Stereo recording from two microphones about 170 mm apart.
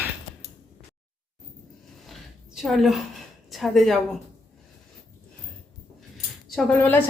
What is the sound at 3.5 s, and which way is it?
Speech, centre (ahead or behind).